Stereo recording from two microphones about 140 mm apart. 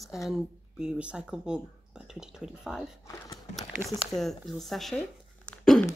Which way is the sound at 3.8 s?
15° right (ahead or behind).